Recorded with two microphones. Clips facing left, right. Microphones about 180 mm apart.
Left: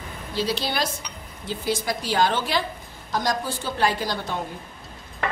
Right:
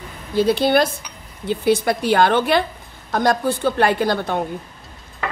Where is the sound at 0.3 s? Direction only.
55° right (ahead or behind).